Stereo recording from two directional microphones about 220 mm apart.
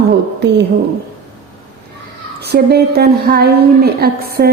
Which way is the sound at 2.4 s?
45° right (ahead or behind).